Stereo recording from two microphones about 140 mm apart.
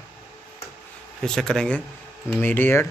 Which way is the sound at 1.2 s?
5° left (ahead or behind).